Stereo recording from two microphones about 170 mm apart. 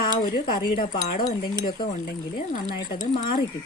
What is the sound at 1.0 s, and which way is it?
Speech, 45° left (ahead or behind).